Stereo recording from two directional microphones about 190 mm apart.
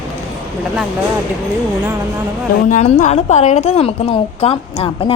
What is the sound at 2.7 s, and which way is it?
A woman's voice, 40° left (ahead or behind).